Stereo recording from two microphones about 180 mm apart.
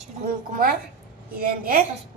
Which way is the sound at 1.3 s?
55° right (ahead or behind).